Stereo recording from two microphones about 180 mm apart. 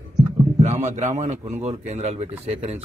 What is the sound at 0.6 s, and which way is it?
A man's voice, 40° right (ahead or behind).